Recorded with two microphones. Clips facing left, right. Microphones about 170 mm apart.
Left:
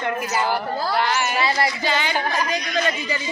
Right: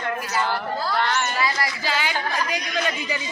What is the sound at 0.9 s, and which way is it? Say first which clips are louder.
Speech: left 2 dB; 5° left (ahead or behind).